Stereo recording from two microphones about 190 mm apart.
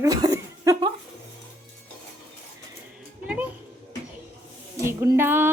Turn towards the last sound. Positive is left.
turn(degrees=-10)  # may be behind; listen again after turning